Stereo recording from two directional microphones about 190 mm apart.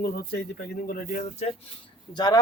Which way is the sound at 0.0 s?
55° left (ahead or behind).